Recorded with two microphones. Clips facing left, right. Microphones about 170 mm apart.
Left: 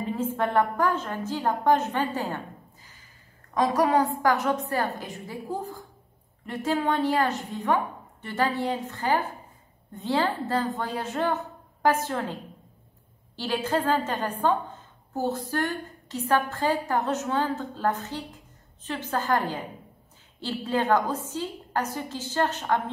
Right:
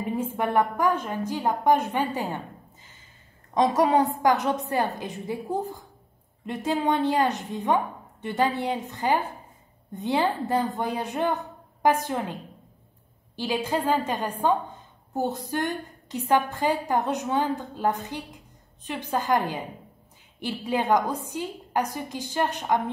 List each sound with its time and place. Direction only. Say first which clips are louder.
0.0 s a sound: even; 15° right (ahead or behind)
0.4 s a woman's voice: right 1 dB; 15° right (ahead or behind)
13.4 s a woman's voice: even; 10° right (ahead or behind)